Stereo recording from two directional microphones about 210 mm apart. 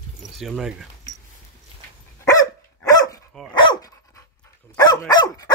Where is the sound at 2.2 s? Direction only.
15° left (ahead or behind).